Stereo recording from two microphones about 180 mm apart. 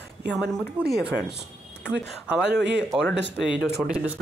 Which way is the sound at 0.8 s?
5° right (ahead or behind).